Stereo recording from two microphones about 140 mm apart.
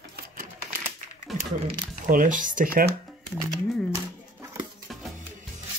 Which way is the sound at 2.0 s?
70° right (ahead or behind).